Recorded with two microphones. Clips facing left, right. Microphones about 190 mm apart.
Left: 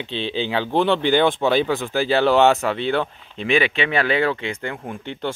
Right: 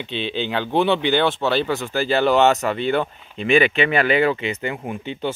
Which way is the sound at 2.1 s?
Centre (ahead or behind).